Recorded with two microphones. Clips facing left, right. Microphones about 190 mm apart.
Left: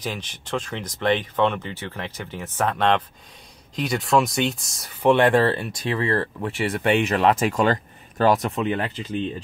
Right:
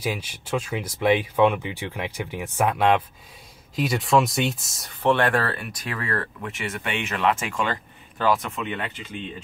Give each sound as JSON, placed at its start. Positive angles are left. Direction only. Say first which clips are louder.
{"t": 0.0, "sound": "speech", "louder": "right 2 dB", "side_deg": -10}
{"t": 5.0, "sound": "speech", "louder": "left 4 dB", "side_deg": 20}